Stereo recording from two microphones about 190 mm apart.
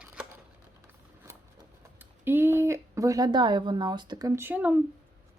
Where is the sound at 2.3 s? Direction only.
10° right (ahead or behind).